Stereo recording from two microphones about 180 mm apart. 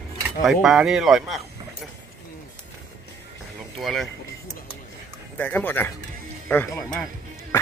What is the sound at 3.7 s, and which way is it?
Speech, centre (ahead or behind).